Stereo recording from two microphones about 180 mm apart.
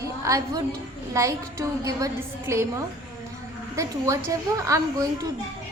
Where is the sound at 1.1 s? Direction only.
15° right (ahead or behind).